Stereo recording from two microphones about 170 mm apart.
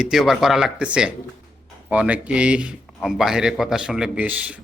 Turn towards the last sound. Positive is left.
turn(degrees=-10)  # may be behind; listen again after turning